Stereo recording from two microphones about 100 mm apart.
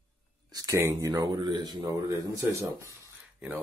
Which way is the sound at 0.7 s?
30° right (ahead or behind).